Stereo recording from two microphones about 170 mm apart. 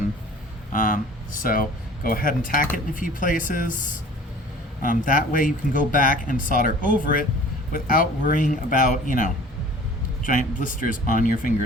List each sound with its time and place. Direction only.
0.7 s speech: 55° left (ahead or behind)